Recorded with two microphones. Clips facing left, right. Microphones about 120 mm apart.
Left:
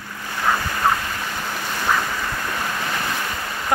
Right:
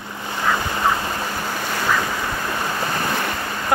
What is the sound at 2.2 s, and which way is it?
Waves, 15° right (ahead or behind).